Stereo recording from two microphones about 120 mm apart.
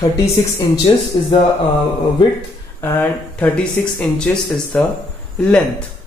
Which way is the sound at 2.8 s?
20° left (ahead or behind).